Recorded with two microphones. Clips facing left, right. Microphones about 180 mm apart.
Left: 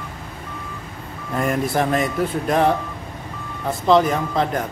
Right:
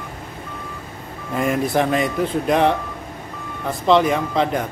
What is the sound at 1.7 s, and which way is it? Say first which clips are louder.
Speech: right 1 dB; centre (ahead or behind).